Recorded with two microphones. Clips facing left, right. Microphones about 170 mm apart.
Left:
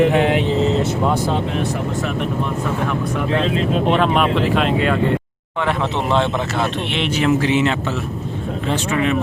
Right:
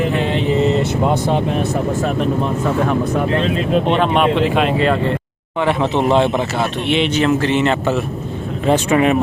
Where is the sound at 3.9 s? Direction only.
Centre (ahead or behind).